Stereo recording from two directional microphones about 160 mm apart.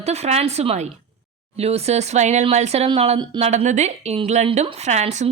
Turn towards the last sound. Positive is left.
turn(degrees=-45)  # may be behind; listen again after turning